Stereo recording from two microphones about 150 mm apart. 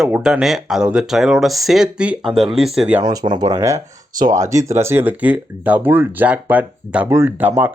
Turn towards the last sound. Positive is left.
turn(degrees=-10)  # may be behind; listen again after turning